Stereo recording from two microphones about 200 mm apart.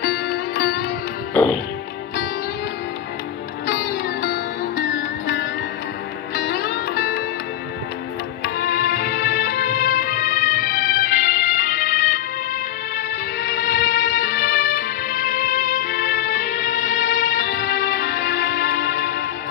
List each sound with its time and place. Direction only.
0.0 s music: 55° left (ahead or behind)
1.3 s music: 5° left (ahead or behind)
3.6 s music: 50° left (ahead or behind)
8.5 s music: 50° left (ahead or behind)
13.4 s music: 55° left (ahead or behind)